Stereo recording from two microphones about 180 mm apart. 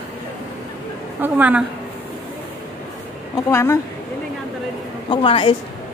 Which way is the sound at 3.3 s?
15° left (ahead or behind).